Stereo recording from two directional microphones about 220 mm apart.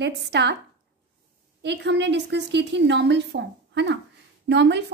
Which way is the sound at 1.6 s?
50° right (ahead or behind).